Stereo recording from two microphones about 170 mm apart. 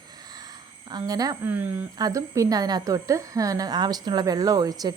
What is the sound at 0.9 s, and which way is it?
Speech, 25° right (ahead or behind).